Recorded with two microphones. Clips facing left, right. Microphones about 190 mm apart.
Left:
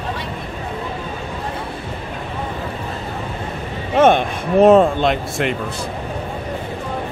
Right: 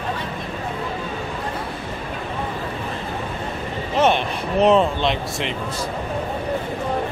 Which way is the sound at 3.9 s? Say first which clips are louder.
Left 5 dB; 50° left (ahead or behind).